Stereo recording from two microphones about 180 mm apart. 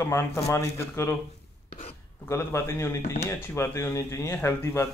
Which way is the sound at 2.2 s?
15° left (ahead or behind).